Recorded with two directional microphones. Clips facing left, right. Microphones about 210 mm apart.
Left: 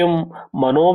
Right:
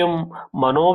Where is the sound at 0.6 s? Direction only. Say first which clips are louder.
Left 3 dB; 15° left (ahead or behind).